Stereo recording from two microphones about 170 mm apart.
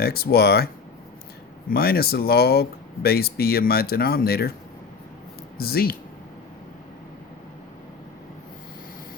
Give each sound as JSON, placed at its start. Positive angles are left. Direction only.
{"t": 0.0, "sound": "speech", "side_deg": 65}
{"t": 1.7, "sound": "speech", "side_deg": 65}
{"t": 5.5, "sound": "speech", "side_deg": 65}